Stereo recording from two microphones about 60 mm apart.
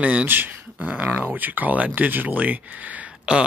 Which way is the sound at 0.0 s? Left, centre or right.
Right.